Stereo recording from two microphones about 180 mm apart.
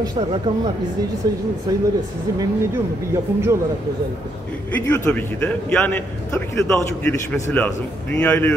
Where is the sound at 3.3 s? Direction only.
10° right (ahead or behind).